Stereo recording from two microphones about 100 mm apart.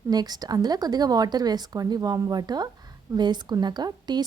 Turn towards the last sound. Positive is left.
turn(degrees=-45)  # may be behind; listen again after turning